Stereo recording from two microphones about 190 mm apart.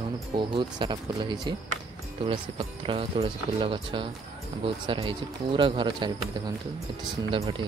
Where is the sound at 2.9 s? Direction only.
30° right (ahead or behind).